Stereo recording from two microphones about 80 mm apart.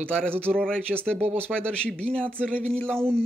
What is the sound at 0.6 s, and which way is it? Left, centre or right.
Speech, centre.